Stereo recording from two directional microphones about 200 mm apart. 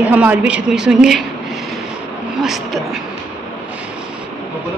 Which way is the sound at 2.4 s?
Centre (ahead or behind).